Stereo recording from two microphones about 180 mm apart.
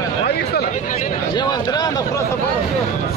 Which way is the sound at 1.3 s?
25° left (ahead or behind).